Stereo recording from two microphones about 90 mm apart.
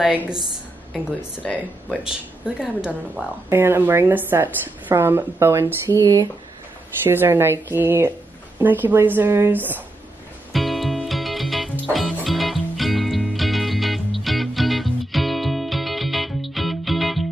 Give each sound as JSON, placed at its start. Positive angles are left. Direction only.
{"t": 0.9, "sound": "speech", "side_deg": 15}
{"t": 2.0, "sound": "speech", "side_deg": -10}
{"t": 3.4, "sound": "a woman's voice", "side_deg": -30}
{"t": 7.0, "sound": "a woman's voice", "side_deg": -25}
{"t": 10.5, "sound": "music", "side_deg": 0}